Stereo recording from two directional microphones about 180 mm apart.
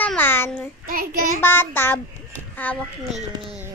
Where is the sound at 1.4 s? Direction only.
10° left (ahead or behind).